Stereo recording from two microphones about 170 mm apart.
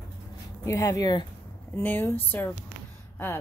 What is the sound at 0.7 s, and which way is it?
A woman's voice, 20° left (ahead or behind).